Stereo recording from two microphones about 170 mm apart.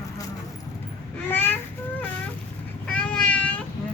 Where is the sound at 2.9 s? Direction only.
10° left (ahead or behind).